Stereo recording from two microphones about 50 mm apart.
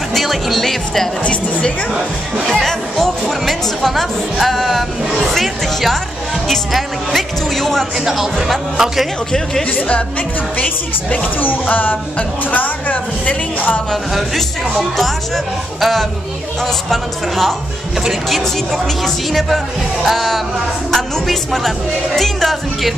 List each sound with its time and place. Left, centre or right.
0.1 s speech: centre
1.2 s speech: left
2.5 s speech: centre
9.3 s speech: centre
9.7 s a woman's voice: left
15.0 s speech: centre